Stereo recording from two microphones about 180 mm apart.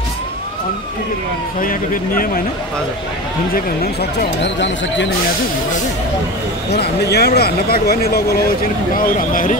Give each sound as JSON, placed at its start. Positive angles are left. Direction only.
{"t": 1.6, "sound": "speech", "side_deg": 50}
{"t": 3.5, "sound": "speech", "side_deg": 60}
{"t": 6.8, "sound": "speech", "side_deg": 65}